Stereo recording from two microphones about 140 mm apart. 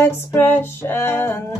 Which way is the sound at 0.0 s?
15° left (ahead or behind).